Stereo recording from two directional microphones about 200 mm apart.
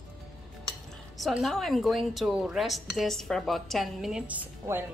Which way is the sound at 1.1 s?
Centre (ahead or behind).